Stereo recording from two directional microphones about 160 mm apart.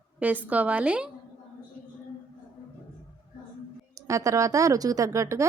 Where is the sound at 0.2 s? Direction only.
10° right (ahead or behind).